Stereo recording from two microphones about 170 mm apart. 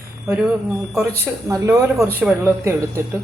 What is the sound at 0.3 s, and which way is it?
Speech, 5° right (ahead or behind).